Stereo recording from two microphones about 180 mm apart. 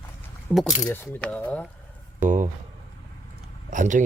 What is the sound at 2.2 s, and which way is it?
Speech, 45° right (ahead or behind).